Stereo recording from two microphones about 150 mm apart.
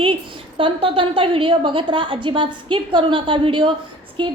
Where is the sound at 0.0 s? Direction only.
35° right (ahead or behind).